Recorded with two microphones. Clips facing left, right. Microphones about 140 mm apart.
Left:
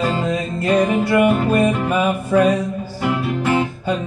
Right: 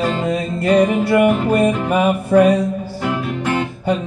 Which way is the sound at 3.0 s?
5° left (ahead or behind).